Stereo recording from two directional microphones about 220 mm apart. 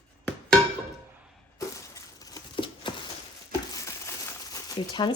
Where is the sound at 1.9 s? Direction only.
15° left (ahead or behind).